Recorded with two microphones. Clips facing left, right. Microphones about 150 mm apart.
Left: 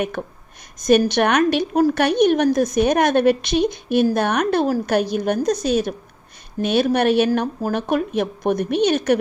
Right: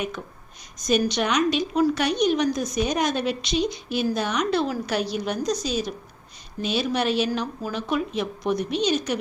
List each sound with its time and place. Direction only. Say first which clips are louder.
0.0 s a woman's voice: left 6 dB; 60° left (ahead or behind)